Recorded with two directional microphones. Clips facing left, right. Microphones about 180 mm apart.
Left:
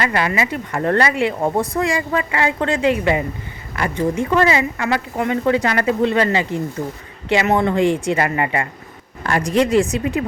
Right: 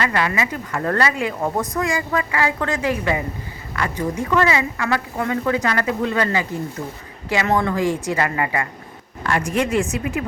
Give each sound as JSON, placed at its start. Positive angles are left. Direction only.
{"t": 0.0, "sound": "a woman's voice", "side_deg": 25}